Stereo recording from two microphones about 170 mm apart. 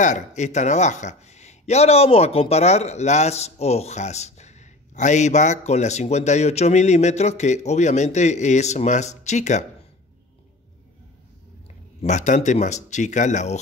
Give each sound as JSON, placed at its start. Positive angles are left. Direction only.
{"t": 0.0, "sound": "speech", "side_deg": 45}
{"t": 12.0, "sound": "speech", "side_deg": 45}